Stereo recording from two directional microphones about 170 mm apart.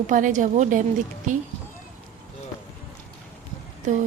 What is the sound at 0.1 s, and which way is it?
Speech, 50° right (ahead or behind).